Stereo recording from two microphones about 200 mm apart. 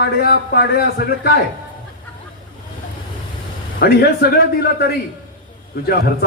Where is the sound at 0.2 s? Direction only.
50° left (ahead or behind).